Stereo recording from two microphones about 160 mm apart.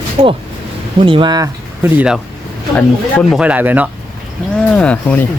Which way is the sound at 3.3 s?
10° right (ahead or behind).